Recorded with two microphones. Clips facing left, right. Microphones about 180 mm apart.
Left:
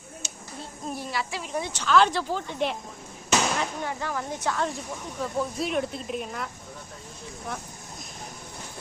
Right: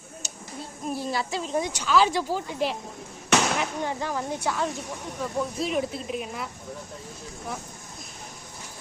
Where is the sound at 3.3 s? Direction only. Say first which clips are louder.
Right 2 dB; 70° right (ahead or behind).